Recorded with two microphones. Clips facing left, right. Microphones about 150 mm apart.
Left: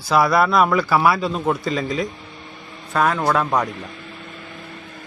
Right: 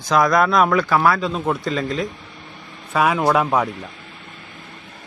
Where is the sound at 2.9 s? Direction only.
10° right (ahead or behind).